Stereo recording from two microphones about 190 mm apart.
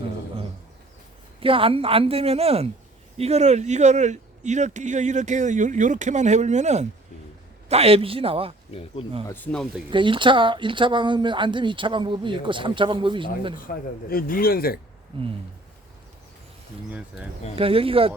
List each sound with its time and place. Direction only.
1.4 s speech: 30° right (ahead or behind)
8.7 s speech: 30° left (ahead or behind)
9.3 s speech: 5° left (ahead or behind)
9.9 s speech: 25° right (ahead or behind)
13.7 s speech: 50° left (ahead or behind)
15.1 s speech: 30° right (ahead or behind)
17.6 s speech: 30° right (ahead or behind)